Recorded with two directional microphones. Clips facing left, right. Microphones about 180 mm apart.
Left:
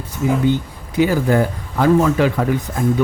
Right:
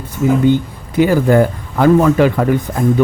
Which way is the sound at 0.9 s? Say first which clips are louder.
Right 4 dB; 55° right (ahead or behind).